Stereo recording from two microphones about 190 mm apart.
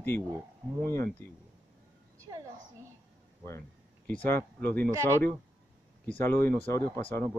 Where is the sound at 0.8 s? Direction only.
10° left (ahead or behind).